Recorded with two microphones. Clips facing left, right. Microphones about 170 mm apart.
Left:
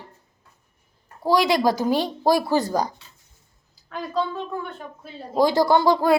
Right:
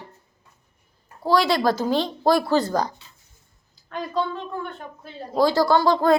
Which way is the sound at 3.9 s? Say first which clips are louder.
Even; 5° left (ahead or behind).